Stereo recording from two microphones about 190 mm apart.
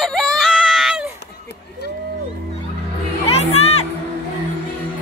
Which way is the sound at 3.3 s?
35° left (ahead or behind).